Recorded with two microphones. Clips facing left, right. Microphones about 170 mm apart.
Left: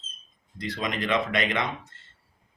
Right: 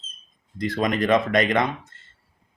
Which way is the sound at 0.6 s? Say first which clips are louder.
Right 7 dB; 45° right (ahead or behind).